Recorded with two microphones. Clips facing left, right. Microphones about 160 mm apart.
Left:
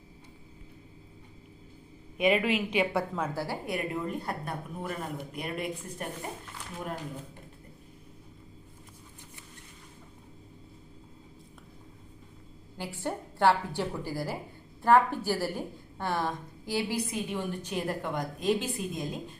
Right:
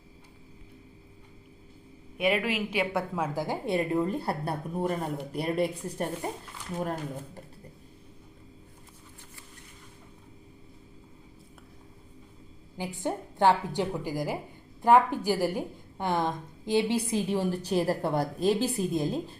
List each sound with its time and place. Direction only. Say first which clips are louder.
2.1 s a woman's voice: left 1 dB; 5° right (ahead or behind)
3.3 s a woman's voice: right 5 dB; 20° right (ahead or behind); by 7.4 s 40° right (ahead or behind)
12.7 s a woman's voice: right 3 dB; 15° right (ahead or behind); by 19.4 s 30° right (ahead or behind)